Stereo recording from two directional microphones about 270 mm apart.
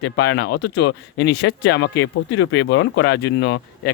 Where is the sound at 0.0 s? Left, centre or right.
Left.